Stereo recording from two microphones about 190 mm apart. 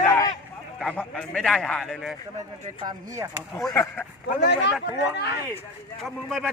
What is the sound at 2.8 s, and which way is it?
Speech, 20° right (ahead or behind).